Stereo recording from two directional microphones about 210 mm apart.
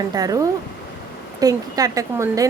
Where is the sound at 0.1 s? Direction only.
15° right (ahead or behind).